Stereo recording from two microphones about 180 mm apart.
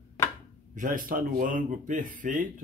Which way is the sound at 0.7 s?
45° right (ahead or behind).